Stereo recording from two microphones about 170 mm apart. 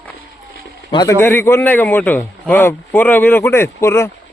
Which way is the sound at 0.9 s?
15° left (ahead or behind).